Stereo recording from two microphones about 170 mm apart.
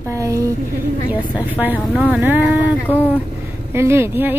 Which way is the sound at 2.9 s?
10° left (ahead or behind).